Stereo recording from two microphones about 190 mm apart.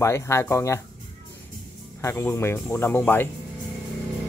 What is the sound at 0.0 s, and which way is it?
Speech, 15° left (ahead or behind).